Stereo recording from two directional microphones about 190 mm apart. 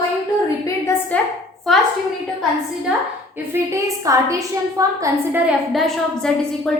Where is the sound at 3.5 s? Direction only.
15° right (ahead or behind).